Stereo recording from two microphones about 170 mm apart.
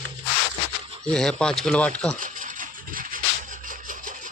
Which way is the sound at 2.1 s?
50° right (ahead or behind).